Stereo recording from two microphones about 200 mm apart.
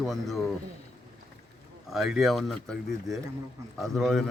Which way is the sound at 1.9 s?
Centre (ahead or behind).